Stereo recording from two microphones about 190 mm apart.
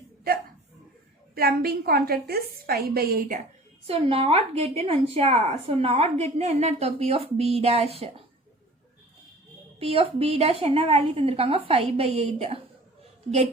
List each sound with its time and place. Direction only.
1.4 s a woman's voice: 55° right (ahead or behind)
3.8 s a woman's voice: 30° right (ahead or behind)
9.8 s a woman's voice: 30° right (ahead or behind)